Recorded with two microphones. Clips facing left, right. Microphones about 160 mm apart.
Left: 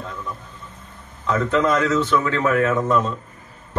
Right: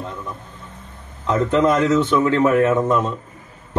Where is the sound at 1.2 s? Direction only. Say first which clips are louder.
Right 3 dB; 25° right (ahead or behind).